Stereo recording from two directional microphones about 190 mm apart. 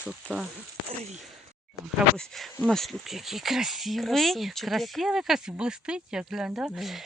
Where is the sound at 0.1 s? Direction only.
5° right (ahead or behind).